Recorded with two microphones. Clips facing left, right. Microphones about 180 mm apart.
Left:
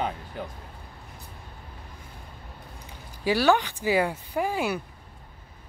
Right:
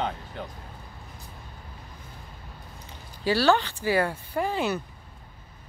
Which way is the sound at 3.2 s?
15° left (ahead or behind).